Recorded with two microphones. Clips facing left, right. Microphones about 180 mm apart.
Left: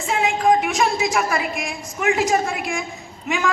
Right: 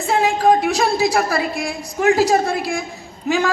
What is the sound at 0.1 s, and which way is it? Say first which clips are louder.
A woman's voice: right 3 dB; 35° right (ahead or behind).